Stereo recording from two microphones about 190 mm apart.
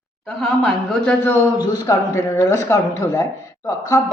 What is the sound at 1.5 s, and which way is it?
A man's voice, 20° left (ahead or behind).